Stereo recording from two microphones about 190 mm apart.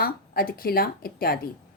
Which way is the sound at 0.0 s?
50° left (ahead or behind).